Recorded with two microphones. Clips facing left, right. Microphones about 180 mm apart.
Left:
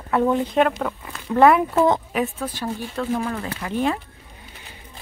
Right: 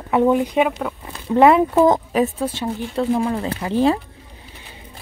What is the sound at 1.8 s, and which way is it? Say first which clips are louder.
Speech: right 4 dB; 40° right (ahead or behind).